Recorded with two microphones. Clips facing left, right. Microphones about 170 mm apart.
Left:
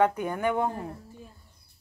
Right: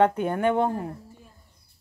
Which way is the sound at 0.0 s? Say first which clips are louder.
Right 3 dB; 25° right (ahead or behind).